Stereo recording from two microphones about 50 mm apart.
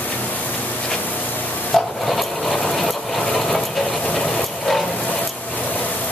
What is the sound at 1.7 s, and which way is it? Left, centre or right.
Rub, centre.